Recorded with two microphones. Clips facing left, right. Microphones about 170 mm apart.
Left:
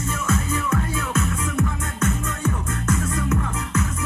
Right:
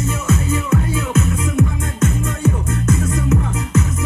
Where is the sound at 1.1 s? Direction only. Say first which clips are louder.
Right 6 dB; 25° right (ahead or behind).